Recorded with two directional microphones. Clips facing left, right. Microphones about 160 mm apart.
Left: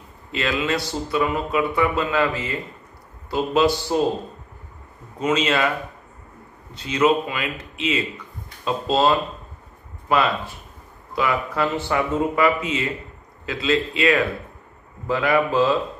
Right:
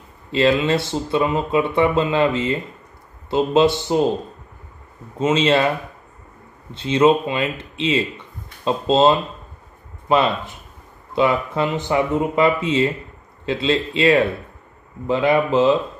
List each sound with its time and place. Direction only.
0.3 s speech: 30° right (ahead or behind)
5.2 s speech: 30° right (ahead or behind)
6.7 s speech: 25° right (ahead or behind)